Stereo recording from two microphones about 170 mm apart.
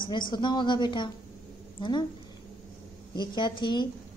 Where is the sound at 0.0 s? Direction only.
25° left (ahead or behind).